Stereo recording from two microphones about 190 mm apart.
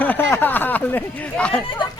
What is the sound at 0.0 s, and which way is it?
Speech, 10° left (ahead or behind).